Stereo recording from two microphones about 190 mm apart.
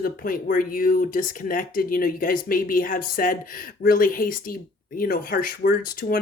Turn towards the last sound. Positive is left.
turn(degrees=50)  # may be behind; listen again after turning